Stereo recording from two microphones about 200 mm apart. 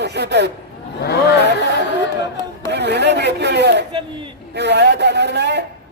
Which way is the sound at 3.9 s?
25° right (ahead or behind).